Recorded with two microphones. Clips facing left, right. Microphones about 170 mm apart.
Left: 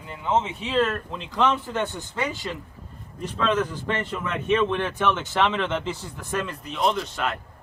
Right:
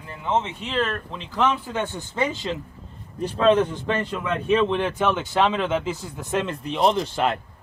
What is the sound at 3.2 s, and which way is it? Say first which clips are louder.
Speech: right 6 dB; 30° right (ahead or behind).